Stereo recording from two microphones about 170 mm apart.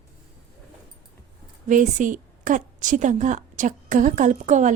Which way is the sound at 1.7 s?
50° right (ahead or behind).